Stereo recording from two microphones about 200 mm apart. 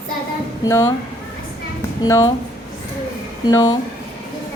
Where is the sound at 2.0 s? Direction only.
15° left (ahead or behind).